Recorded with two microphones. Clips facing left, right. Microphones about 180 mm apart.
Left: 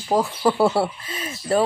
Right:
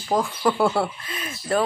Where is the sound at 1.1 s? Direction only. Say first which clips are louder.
Left 2 dB; 25° left (ahead or behind).